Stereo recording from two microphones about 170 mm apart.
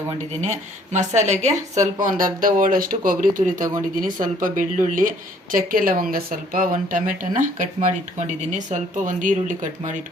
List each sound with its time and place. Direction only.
0.4 s speech: 45° right (ahead or behind)